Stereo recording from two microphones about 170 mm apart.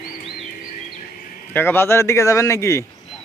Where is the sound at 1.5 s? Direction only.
10° left (ahead or behind).